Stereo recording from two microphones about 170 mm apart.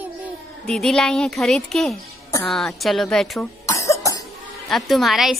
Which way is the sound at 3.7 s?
20° left (ahead or behind).